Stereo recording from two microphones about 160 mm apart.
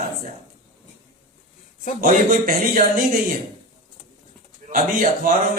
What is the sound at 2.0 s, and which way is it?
Speech, 60° right (ahead or behind).